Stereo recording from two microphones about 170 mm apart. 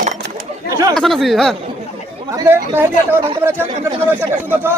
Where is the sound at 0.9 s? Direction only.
Centre (ahead or behind).